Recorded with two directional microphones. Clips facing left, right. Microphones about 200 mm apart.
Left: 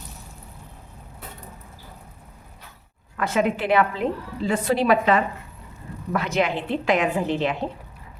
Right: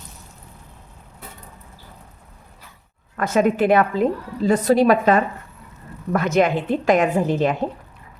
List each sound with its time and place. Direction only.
3.2 s a woman's voice: 45° right (ahead or behind)